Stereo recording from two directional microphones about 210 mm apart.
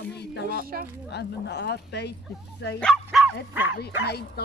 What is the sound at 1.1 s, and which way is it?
Speech, 55° left (ahead or behind).